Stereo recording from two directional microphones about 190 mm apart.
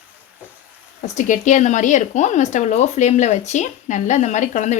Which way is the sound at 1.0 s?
40° left (ahead or behind).